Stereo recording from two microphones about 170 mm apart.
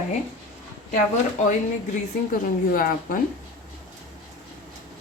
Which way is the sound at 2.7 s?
55° left (ahead or behind).